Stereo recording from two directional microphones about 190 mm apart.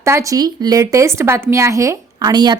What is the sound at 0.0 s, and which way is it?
A woman's voice, 15° right (ahead or behind).